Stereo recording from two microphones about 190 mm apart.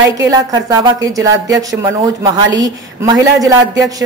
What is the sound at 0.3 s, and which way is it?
A woman's voice, 20° right (ahead or behind).